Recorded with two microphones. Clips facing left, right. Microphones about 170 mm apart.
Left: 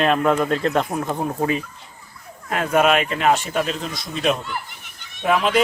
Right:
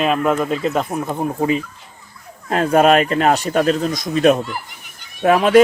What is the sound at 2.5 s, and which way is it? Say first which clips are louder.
Speech: right 5 dB; 35° right (ahead or behind).